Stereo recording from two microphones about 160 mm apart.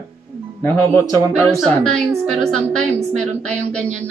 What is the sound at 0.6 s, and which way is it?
Speech, 20° left (ahead or behind).